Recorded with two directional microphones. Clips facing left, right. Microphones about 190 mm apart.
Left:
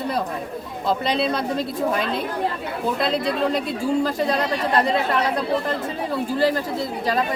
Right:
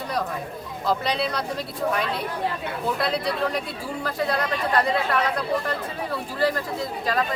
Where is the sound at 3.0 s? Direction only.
20° left (ahead or behind).